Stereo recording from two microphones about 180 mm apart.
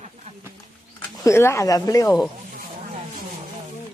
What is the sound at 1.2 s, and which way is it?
Speech, 15° left (ahead or behind).